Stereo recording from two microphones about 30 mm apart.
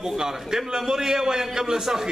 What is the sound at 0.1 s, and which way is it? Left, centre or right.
A man's voice, centre.